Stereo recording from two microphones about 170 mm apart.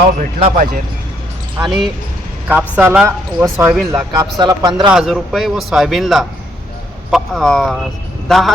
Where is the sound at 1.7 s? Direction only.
Centre (ahead or behind).